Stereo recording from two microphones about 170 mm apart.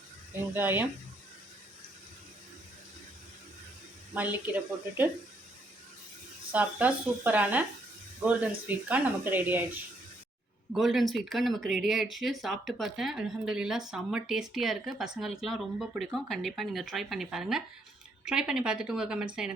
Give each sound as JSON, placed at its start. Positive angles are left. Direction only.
{"t": 0.5, "sound": "speech", "side_deg": -10}
{"t": 4.1, "sound": "speech", "side_deg": -10}
{"t": 6.5, "sound": "speech", "side_deg": -10}
{"t": 10.7, "sound": "speech", "side_deg": 0}